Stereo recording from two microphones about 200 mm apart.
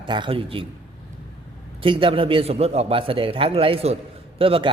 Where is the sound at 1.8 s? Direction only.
25° right (ahead or behind).